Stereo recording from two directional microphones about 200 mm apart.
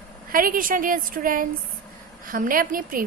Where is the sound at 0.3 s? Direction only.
45° right (ahead or behind).